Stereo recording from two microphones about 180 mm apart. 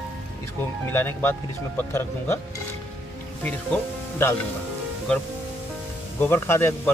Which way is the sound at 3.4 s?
10° left (ahead or behind).